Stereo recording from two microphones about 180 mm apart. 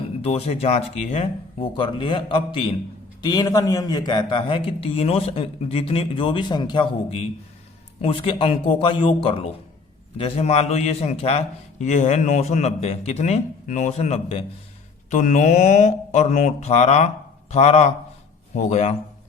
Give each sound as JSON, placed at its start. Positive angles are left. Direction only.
{"t": 0.2, "sound": "a man's voice", "side_deg": 35}